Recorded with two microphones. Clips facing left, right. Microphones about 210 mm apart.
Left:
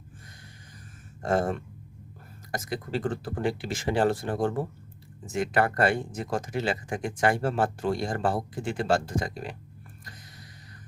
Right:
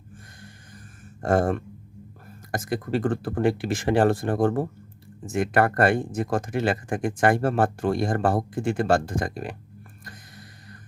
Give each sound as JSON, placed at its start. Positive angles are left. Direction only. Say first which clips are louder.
{"t": 1.2, "sound": "speech", "louder": "right 4 dB", "side_deg": -50}
{"t": 10.0, "sound": "music", "louder": "right 4 dB", "side_deg": -50}